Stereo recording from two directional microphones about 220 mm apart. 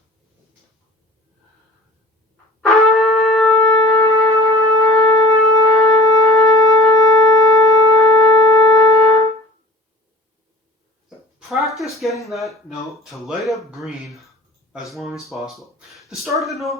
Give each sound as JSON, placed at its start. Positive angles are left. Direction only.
{"t": 2.6, "sound": "wind instrument", "side_deg": 0}
{"t": 3.7, "sound": "wind instrument", "side_deg": 15}
{"t": 4.1, "sound": "wind instrument", "side_deg": 0}
{"t": 4.5, "sound": "wind instrument", "side_deg": -15}
{"t": 4.8, "sound": "wind instrument", "side_deg": 15}
{"t": 5.5, "sound": "shofar", "side_deg": 15}
{"t": 11.3, "sound": "speech", "side_deg": 0}